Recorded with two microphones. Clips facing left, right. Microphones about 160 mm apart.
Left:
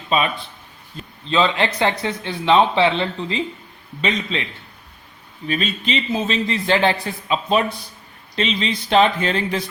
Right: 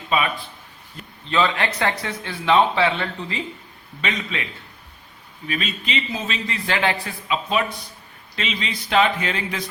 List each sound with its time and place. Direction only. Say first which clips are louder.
0.9 s speech: left 2 dB; 20° left (ahead or behind)
5.5 s speech: left 5 dB; 30° left (ahead or behind)